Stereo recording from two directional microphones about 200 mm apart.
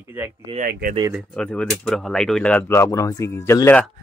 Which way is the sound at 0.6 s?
45° right (ahead or behind).